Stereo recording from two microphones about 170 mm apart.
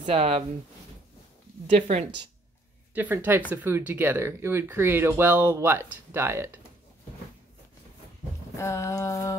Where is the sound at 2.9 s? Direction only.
10° right (ahead or behind).